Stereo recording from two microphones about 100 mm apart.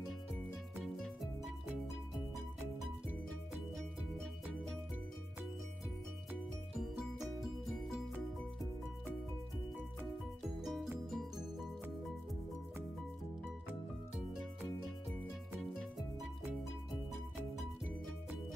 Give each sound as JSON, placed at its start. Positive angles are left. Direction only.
{"t": 0.3, "sound": "music", "side_deg": 0}
{"t": 3.7, "sound": "music", "side_deg": 5}
{"t": 7.6, "sound": "music", "side_deg": 0}
{"t": 10.6, "sound": "music", "side_deg": 0}